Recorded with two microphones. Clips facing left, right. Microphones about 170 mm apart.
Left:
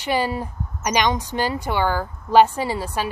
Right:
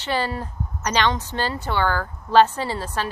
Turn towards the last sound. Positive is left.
turn(degrees=10)  # may be behind; listen again after turning